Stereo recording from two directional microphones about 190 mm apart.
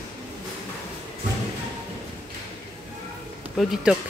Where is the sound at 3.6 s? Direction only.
Centre (ahead or behind).